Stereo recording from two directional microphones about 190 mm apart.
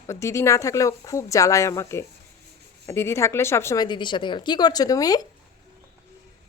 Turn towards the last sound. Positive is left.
turn(degrees=20)  # may be behind; listen again after turning